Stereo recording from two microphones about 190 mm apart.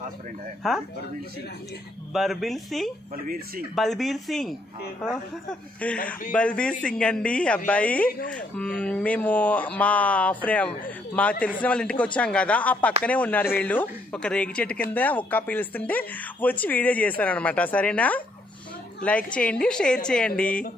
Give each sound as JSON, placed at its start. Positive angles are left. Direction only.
{"t": 2.1, "sound": "a woman's voice", "side_deg": 0}
{"t": 3.3, "sound": "speech", "side_deg": -50}
{"t": 3.7, "sound": "a woman's voice", "side_deg": 0}